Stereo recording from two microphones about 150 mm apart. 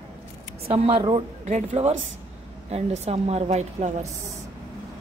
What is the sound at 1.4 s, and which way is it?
A woman's voice, 50° right (ahead or behind).